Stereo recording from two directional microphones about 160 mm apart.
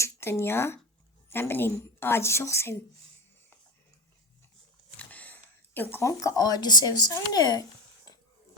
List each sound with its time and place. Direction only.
0.0 s a woman's voice: 15° left (ahead or behind)
4.9 s speech: 10° left (ahead or behind)